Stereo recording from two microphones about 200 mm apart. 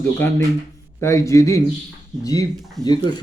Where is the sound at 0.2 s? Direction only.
10° left (ahead or behind).